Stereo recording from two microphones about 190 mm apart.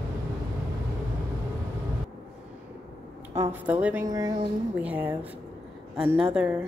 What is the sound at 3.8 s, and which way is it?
Speech, 15° right (ahead or behind).